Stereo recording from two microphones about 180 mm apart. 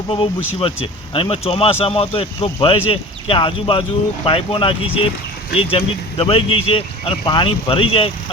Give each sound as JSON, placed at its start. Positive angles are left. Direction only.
{"t": 0.1, "sound": "speech", "side_deg": 25}